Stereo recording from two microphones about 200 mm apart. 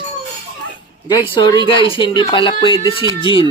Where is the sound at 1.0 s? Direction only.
20° left (ahead or behind).